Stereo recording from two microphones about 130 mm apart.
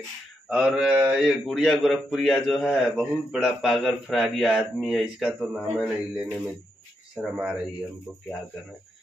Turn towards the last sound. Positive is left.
turn(degrees=-10)  # may be behind; listen again after turning